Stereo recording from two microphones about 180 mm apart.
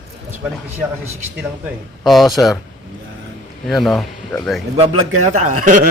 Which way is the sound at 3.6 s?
Centre (ahead or behind).